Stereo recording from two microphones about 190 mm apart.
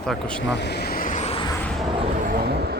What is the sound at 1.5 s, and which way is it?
Fixed-wing aircraft, 10° left (ahead or behind).